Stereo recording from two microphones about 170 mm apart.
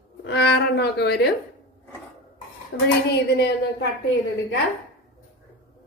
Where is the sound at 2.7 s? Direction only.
90° left.